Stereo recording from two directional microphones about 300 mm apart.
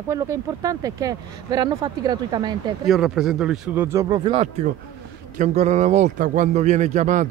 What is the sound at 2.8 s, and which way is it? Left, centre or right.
A man's voice, centre.